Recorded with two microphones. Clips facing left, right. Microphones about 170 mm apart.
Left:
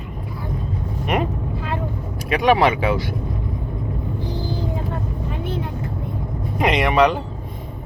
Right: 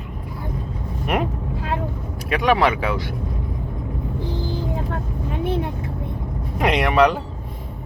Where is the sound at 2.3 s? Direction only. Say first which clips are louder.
Left 2 dB; 25° left (ahead or behind).